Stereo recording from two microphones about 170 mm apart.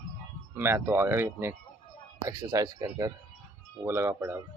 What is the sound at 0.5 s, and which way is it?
Speech, 15° right (ahead or behind).